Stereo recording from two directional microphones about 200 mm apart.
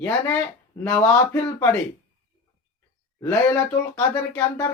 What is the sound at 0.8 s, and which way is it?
Speech, 15° left (ahead or behind).